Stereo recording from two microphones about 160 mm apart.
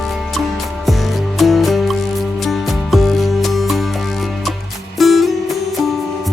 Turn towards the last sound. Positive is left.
turn(degrees=0)  # may be behind; listen again after turning